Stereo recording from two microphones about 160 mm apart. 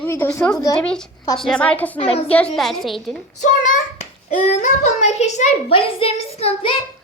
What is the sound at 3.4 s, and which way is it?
A child's voice, 50° left (ahead or behind).